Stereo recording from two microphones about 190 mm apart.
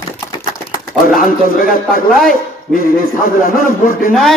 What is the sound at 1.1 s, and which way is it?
Speech, 50° left (ahead or behind).